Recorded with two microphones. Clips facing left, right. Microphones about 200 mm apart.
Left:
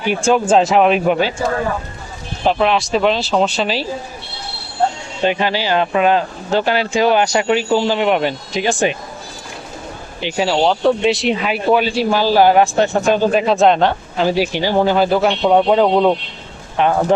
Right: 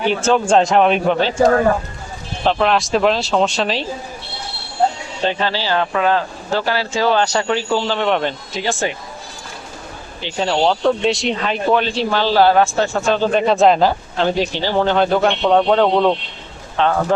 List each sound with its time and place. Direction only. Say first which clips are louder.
0.1 s speech: left 2 dB; 10° left (ahead or behind)
2.4 s speech: left 1 dB; 5° left (ahead or behind)
5.2 s speech: left 3 dB; 15° left (ahead or behind)
10.2 s speech: left 4 dB; 15° left (ahead or behind)
10.4 s speech: left 1 dB; centre (ahead or behind)